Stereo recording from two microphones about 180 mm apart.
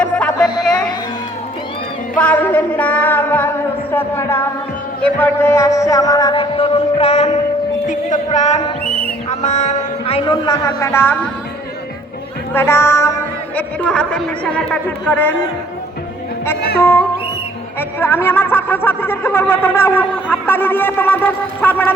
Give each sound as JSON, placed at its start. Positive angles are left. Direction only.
{"t": 0.0, "sound": "music", "side_deg": 5}
{"t": 0.3, "sound": "a sound", "side_deg": 20}
{"t": 2.1, "sound": "speech", "side_deg": 10}
{"t": 5.0, "sound": "music", "side_deg": 10}
{"t": 7.9, "sound": "a man's voice", "side_deg": 40}
{"t": 12.5, "sound": "speech", "side_deg": 15}
{"t": 16.8, "sound": "music", "side_deg": 10}
{"t": 17.7, "sound": "speech", "side_deg": 10}